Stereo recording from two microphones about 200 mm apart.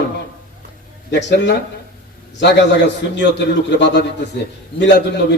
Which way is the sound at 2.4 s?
60° left (ahead or behind).